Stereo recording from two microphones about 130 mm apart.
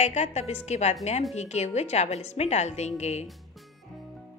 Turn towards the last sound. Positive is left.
turn(degrees=55)  # may be behind; listen again after turning